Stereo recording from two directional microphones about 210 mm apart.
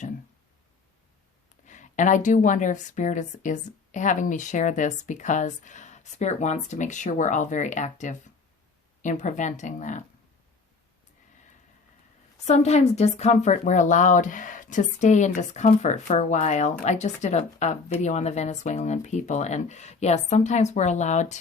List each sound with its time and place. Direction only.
1.6 s a woman's voice: 35° left (ahead or behind)
12.5 s a woman's voice: 30° left (ahead or behind)